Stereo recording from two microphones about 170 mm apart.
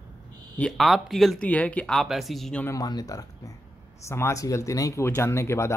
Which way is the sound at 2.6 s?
20° left (ahead or behind).